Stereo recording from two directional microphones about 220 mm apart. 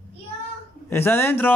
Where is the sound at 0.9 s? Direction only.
10° left (ahead or behind).